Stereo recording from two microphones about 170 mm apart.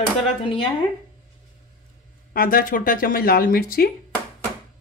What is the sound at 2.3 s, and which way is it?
Speech, 55° left (ahead or behind).